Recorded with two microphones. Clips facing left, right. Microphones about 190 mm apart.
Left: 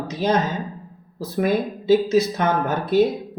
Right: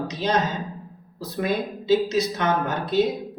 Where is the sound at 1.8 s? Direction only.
50° left (ahead or behind).